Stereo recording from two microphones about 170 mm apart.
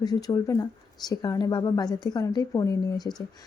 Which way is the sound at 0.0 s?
25° left (ahead or behind).